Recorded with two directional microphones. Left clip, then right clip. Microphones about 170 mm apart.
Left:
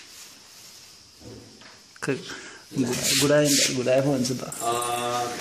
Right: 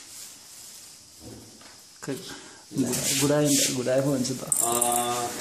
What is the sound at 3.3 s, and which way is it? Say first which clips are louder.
Speech: left 3 dB; centre (ahead or behind).